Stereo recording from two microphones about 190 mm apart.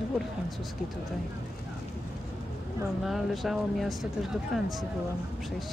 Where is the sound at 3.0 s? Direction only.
Centre (ahead or behind).